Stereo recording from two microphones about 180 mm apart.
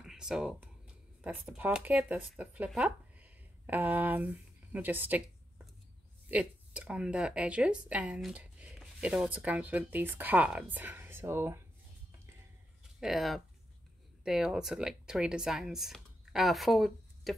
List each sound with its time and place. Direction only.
0.0 s speech: 5° right (ahead or behind)
6.2 s speech: 5° right (ahead or behind)
13.0 s speech: centre (ahead or behind)